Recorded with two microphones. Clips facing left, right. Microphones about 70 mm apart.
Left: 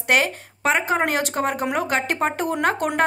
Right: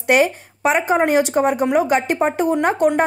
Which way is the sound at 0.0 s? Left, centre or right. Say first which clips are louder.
Right 5 dB; centre.